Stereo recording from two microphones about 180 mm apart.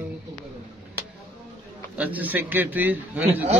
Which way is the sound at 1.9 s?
10° right (ahead or behind).